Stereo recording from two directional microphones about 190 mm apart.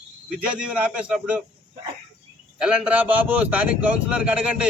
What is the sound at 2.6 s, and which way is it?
A man's voice, 5° right (ahead or behind).